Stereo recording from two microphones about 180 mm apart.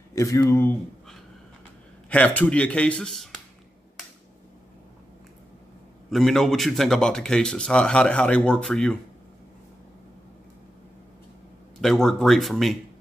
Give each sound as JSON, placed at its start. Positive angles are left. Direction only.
{"t": 0.1, "sound": "speech", "side_deg": 15}
{"t": 2.0, "sound": "speech", "side_deg": 5}
{"t": 6.0, "sound": "speech", "side_deg": 0}
{"t": 11.8, "sound": "speech", "side_deg": 5}